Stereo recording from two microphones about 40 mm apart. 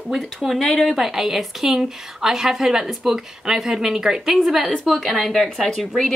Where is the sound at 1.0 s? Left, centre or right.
Centre.